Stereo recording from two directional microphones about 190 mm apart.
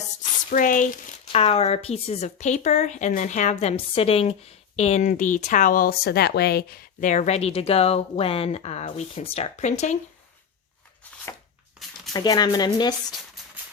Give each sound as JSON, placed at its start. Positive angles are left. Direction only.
{"t": 0.5, "sound": "speech", "side_deg": 45}
{"t": 1.3, "sound": "speech", "side_deg": 30}
{"t": 11.8, "sound": "a sound", "side_deg": 0}
{"t": 12.1, "sound": "speech", "side_deg": 20}